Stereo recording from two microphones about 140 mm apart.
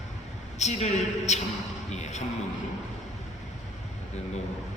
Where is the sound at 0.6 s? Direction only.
55° left (ahead or behind).